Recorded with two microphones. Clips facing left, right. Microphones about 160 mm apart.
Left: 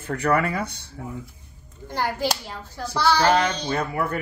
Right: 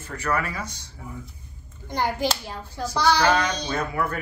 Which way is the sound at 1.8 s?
15° right (ahead or behind).